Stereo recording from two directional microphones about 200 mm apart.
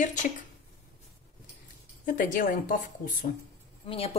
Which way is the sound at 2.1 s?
45° left (ahead or behind).